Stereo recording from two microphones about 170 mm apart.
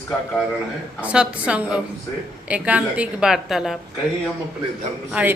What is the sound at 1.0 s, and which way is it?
A woman's voice, 5° right (ahead or behind).